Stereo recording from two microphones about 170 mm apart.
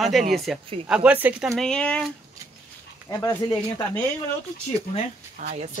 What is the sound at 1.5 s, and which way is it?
Speech, 5° left (ahead or behind).